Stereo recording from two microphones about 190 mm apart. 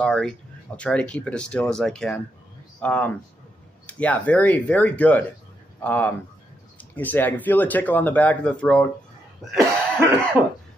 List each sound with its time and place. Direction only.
0.0 s speech: 5° left (ahead or behind)
10.4 s cough: 10° right (ahead or behind)